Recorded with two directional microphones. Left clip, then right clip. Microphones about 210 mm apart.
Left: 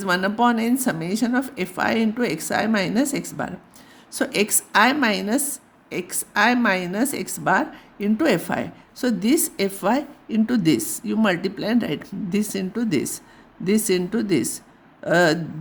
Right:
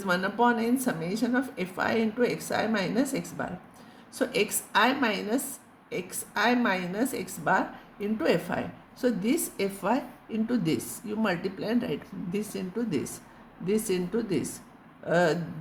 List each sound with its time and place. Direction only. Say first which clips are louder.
0.0 s a woman's voice: left 5 dB; 55° left (ahead or behind)